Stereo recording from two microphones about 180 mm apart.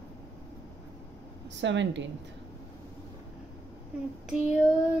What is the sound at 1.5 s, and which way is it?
Speech, 90° right.